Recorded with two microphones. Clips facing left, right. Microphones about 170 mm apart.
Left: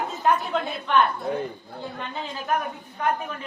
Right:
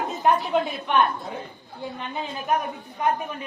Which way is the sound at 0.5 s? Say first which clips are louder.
Right 4 dB; 20° right (ahead or behind).